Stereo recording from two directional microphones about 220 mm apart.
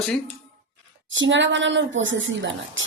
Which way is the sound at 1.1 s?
55° right (ahead or behind).